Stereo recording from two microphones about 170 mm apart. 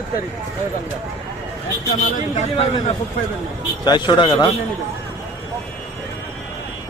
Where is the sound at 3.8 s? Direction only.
25° left (ahead or behind).